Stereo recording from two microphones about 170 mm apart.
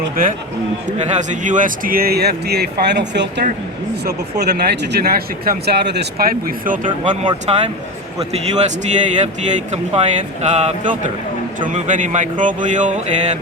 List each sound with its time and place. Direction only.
0.9 s speech: 45° right (ahead or behind); by 3.4 s 90° right
4.0 s speech: 70° right (ahead or behind)
7.0 s a man's voice: 45° right (ahead or behind)